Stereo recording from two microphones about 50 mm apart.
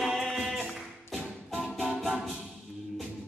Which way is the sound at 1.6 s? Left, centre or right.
Centre.